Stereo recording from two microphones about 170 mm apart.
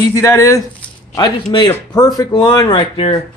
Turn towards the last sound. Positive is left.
turn(degrees=30)  # may be behind; listen again after turning